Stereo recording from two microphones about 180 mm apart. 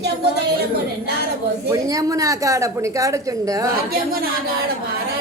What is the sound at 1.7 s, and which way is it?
A woman's voice, 20° right (ahead or behind).